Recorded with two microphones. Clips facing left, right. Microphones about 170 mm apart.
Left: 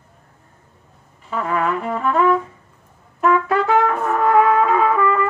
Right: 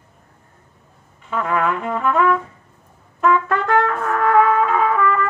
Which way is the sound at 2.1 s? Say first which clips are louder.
Left 1 dB; 30° left (ahead or behind).